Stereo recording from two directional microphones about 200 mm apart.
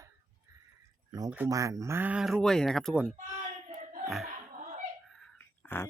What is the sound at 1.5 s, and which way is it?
Speech, 15° right (ahead or behind).